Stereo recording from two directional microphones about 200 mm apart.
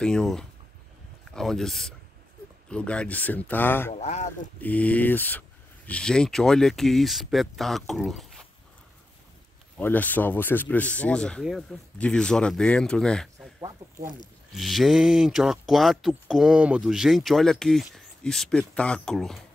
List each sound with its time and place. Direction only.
0.0 s speech: 5° left (ahead or behind)
3.9 s speech: 35° left (ahead or behind)
4.6 s speech: 10° left (ahead or behind)
9.8 s speech: 10° left (ahead or behind)
14.5 s speech: centre (ahead or behind)